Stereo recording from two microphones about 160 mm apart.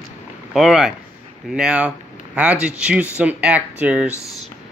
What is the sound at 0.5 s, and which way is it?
Speech, centre (ahead or behind).